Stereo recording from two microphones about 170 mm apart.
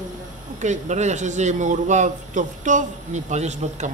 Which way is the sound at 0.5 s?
45° right (ahead or behind).